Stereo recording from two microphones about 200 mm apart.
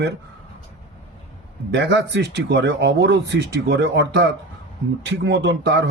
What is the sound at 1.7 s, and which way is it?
Speech, 60° right (ahead or behind).